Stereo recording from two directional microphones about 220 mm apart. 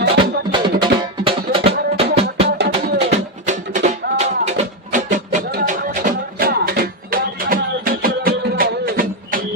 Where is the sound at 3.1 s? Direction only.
35° right (ahead or behind).